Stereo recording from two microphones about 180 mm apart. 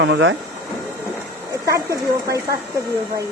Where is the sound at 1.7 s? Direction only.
15° right (ahead or behind).